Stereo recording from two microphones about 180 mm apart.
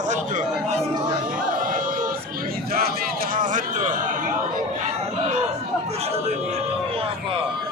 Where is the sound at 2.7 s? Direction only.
55° right (ahead or behind).